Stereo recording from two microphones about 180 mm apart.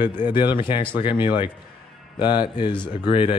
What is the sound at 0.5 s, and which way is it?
Speech, 25° left (ahead or behind).